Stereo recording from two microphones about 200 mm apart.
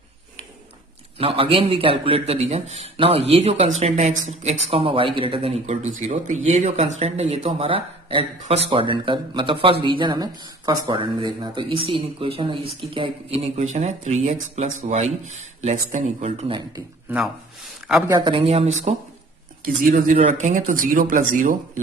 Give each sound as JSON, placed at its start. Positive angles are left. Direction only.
{"t": 1.1, "sound": "speech", "side_deg": -25}
{"t": 18.0, "sound": "speech", "side_deg": -20}